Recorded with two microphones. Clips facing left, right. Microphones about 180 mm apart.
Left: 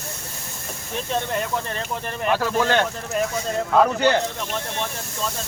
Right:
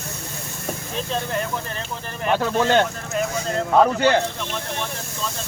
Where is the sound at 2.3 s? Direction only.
25° right (ahead or behind).